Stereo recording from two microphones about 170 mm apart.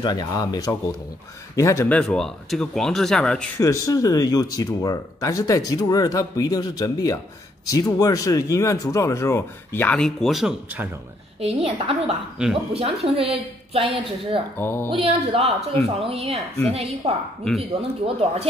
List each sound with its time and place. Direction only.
0.0 s speech: 25° left (ahead or behind); by 3.4 s 5° left (ahead or behind)
3.5 s speech: 20° left (ahead or behind); by 10.9 s 5° right (ahead or behind)
11.3 s a woman's voice: 35° right (ahead or behind)
14.6 s speech: 10° left (ahead or behind)
15.0 s a woman's voice: 35° right (ahead or behind)
16.3 s speech: 5° left (ahead or behind)
16.7 s a woman's voice: 35° right (ahead or behind)